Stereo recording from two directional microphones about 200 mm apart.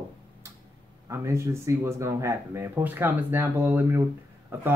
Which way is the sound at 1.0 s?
15° right (ahead or behind).